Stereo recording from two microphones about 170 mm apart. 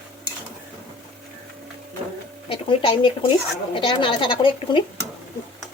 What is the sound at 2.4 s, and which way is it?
A woman's voice, 30° left (ahead or behind).